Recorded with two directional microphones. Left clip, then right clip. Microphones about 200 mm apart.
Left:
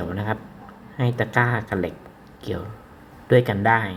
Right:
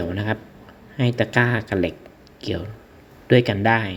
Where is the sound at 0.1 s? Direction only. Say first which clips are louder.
Right 2 dB; 25° right (ahead or behind).